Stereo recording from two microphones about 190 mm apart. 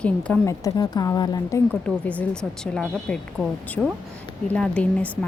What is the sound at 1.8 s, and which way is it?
A woman's voice, 5° left (ahead or behind).